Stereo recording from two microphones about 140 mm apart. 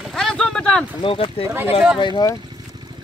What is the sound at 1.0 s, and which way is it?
Speech, 40° left (ahead or behind).